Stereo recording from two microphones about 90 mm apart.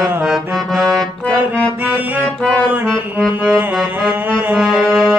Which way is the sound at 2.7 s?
20° right (ahead or behind).